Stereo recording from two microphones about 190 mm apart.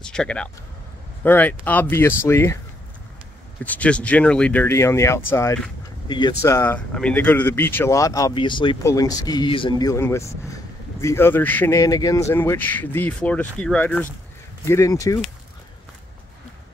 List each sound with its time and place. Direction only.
0.0 s speech: 5° left (ahead or behind)
3.6 s speech: 5° left (ahead or behind)